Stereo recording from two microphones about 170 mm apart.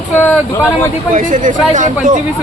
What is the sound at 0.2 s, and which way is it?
Speech, 10° left (ahead or behind).